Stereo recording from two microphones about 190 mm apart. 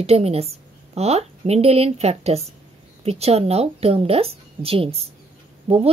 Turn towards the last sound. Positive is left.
turn(degrees=-30)  # may be behind; listen again after turning